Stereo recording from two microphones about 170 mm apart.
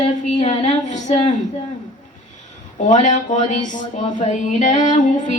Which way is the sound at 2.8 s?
45° left (ahead or behind).